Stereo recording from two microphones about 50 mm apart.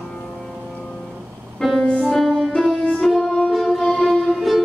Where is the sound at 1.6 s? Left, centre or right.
Centre.